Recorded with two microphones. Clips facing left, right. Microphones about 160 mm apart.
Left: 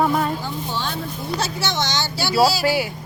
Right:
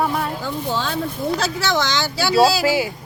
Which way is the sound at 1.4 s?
90° right.